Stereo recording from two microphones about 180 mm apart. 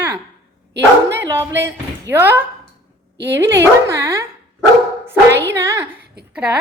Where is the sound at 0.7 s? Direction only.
70° right (ahead or behind).